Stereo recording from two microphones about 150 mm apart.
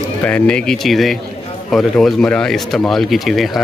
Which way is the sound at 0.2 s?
10° left (ahead or behind).